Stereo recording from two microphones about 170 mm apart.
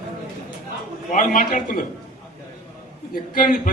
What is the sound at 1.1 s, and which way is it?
Speech, 50° left (ahead or behind).